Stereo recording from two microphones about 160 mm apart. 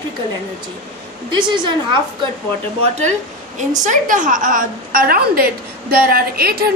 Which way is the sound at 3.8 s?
55° right (ahead or behind).